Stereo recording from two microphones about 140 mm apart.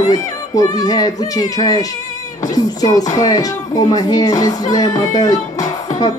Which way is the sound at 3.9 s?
30° left (ahead or behind).